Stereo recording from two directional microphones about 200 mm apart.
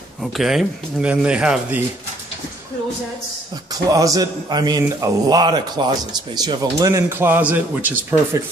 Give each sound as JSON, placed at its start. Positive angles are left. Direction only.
{"t": 0.2, "sound": "a man's voice", "side_deg": 0}
{"t": 3.7, "sound": "a man's voice", "side_deg": -15}